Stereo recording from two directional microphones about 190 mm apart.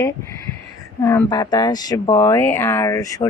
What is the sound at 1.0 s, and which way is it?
Speech, 20° left (ahead or behind).